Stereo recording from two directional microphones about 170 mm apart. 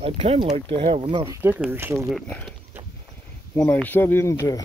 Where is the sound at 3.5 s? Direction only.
10° left (ahead or behind).